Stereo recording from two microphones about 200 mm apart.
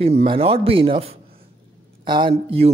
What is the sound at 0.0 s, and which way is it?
Speech, 30° right (ahead or behind).